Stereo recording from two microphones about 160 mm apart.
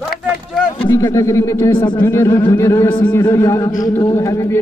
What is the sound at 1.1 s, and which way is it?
A man's voice, 20° left (ahead or behind).